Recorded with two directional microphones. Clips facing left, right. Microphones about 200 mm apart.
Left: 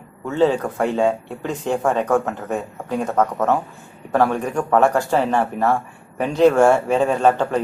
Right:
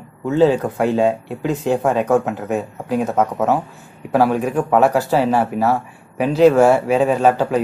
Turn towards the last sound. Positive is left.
turn(degrees=-5)  # may be behind; listen again after turning